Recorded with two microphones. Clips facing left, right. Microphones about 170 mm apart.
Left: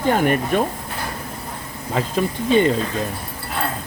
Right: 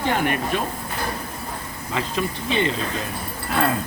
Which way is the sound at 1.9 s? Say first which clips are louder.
Left 4 dB; 45° left (ahead or behind).